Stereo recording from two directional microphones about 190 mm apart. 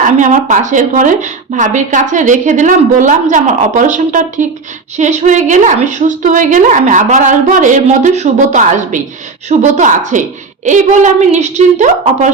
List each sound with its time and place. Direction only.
0.0 s a woman's voice: 40° right (ahead or behind)